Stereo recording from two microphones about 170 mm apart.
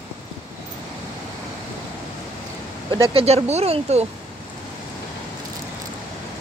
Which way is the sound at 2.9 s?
35° right (ahead or behind).